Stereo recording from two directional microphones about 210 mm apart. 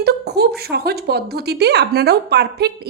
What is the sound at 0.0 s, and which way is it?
A woman's voice, 50° right (ahead or behind).